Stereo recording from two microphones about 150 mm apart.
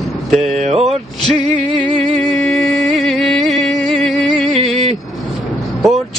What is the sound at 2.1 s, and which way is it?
Music, 5° left (ahead or behind).